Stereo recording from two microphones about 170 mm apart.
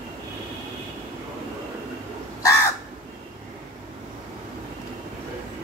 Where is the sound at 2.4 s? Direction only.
20° left (ahead or behind).